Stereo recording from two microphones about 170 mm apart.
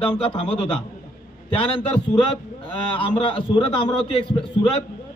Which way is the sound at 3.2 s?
30° left (ahead or behind).